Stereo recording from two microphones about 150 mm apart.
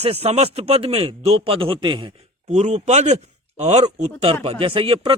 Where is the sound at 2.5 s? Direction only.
50° right (ahead or behind).